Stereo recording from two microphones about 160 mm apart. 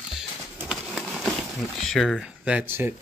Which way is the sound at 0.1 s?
5° right (ahead or behind).